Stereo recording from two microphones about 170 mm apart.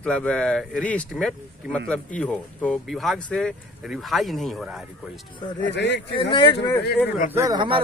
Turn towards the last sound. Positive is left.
turn(degrees=-30)  # may be behind; listen again after turning